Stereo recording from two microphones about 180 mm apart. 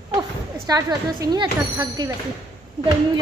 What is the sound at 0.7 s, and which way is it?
Speech, 20° right (ahead or behind).